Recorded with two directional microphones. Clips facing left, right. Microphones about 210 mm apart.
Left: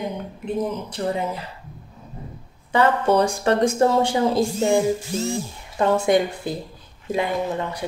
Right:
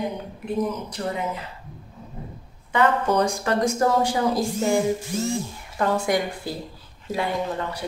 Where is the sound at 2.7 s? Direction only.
30° left (ahead or behind).